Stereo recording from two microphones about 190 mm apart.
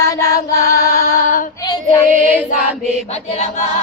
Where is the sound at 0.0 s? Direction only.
20° left (ahead or behind).